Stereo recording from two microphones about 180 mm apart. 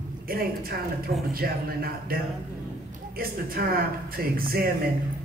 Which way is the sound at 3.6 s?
55° right (ahead or behind).